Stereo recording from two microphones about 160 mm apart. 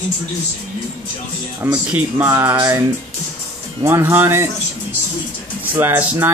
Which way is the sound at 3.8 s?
15° right (ahead or behind).